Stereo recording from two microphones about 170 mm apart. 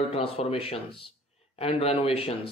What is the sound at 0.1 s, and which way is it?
Speech, 35° left (ahead or behind).